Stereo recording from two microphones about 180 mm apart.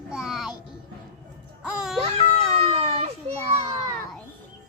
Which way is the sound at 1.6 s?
5° right (ahead or behind).